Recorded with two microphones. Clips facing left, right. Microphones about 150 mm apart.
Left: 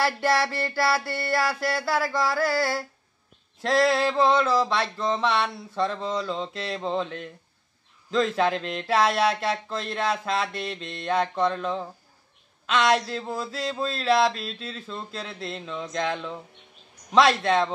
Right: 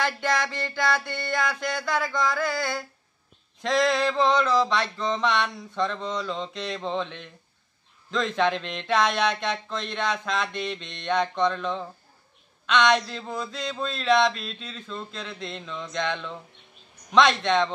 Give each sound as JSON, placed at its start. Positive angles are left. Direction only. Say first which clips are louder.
{"t": 0.0, "sound": "speech", "louder": "left 3 dB", "side_deg": 5}
{"t": 2.3, "sound": "a sound", "louder": "left 3 dB", "side_deg": 35}
{"t": 3.6, "sound": "speech", "louder": "left 1 dB", "side_deg": 5}
{"t": 8.1, "sound": "speech", "louder": "left 2 dB", "side_deg": 5}
{"t": 17.1, "sound": "speech", "louder": "left 1 dB", "side_deg": 5}